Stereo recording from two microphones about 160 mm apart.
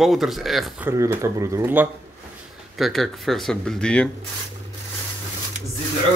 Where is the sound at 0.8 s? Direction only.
20° right (ahead or behind).